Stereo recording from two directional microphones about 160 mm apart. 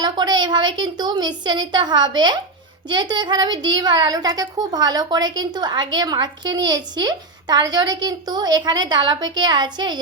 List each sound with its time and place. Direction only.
0.0 s a child's voice: 25° right (ahead or behind)